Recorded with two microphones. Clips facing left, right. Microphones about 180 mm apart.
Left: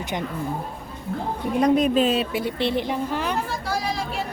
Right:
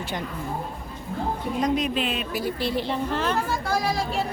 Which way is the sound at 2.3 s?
25° left (ahead or behind).